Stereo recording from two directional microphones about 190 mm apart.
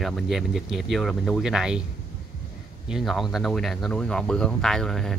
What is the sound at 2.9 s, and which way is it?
Speech, centre (ahead or behind).